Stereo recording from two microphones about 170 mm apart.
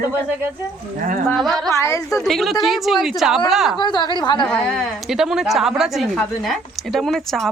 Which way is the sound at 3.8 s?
25° left (ahead or behind).